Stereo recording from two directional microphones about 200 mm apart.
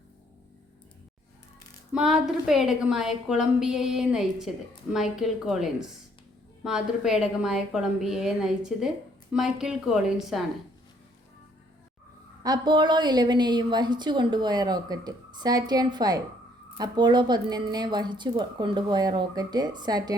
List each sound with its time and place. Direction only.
1.9 s a woman's voice: 5° right (ahead or behind)
12.4 s a woman's voice: 20° right (ahead or behind)